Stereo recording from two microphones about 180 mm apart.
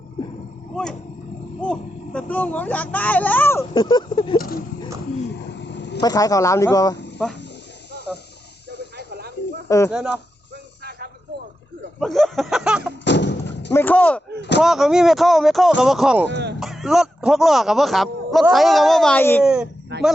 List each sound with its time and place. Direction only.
1.6 s speech: 5° left (ahead or behind)
3.8 s speech: 25° left (ahead or behind)
4.4 s speech: 55° left (ahead or behind)
5.5 s a sound: 75° left (ahead or behind)
6.0 s speech: 20° left (ahead or behind)
9.0 s snake: 65° right (ahead or behind)
9.6 s speech: 15° left (ahead or behind)
9.9 s speech: 5° right (ahead or behind)
11.9 s speech: centre (ahead or behind)
13.1 s thump: 75° left (ahead or behind)
13.7 s speech: 10° left (ahead or behind)
19.9 s a sound: 70° right (ahead or behind)